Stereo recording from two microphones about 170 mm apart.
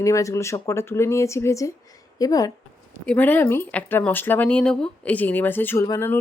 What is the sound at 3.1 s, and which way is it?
A woman's voice, 10° left (ahead or behind).